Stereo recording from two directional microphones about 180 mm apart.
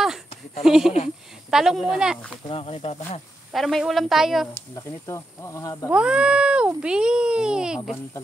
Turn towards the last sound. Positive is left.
turn(degrees=-5)  # may be behind; listen again after turning